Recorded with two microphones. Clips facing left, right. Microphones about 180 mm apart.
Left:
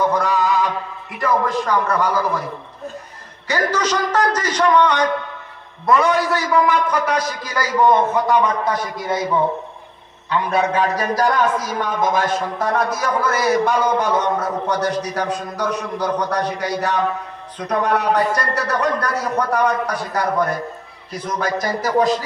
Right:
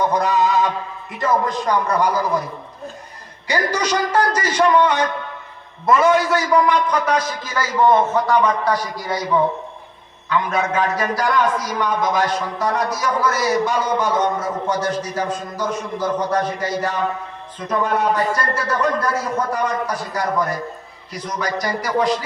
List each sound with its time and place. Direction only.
0.1 s music: 20° right (ahead or behind)
1.2 s a man's voice: 20° right (ahead or behind)
3.4 s a man's voice: 15° right (ahead or behind); by 8.8 s 20° left (ahead or behind)
10.2 s a man's voice: 35° left (ahead or behind)